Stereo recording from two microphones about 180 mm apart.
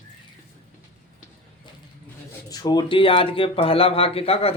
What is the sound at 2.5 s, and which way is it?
A man's voice, 20° left (ahead or behind).